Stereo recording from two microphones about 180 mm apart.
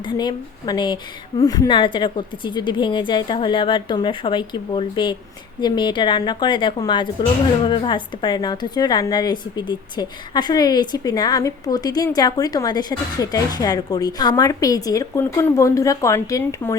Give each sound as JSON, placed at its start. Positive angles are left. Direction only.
{"t": 0.0, "sound": "a woman's voice", "side_deg": 25}